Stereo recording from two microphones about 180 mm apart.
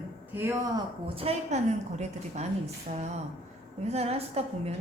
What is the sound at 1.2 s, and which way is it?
A woman's voice, 35° right (ahead or behind).